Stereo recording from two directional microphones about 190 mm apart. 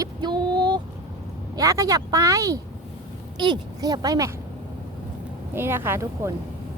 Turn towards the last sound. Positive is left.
turn(degrees=-15)  # may be behind; listen again after turning